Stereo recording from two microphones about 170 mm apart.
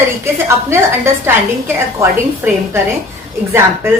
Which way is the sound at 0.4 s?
15° right (ahead or behind).